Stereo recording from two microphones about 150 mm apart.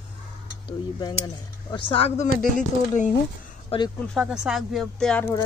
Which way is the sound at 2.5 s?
55° left (ahead or behind).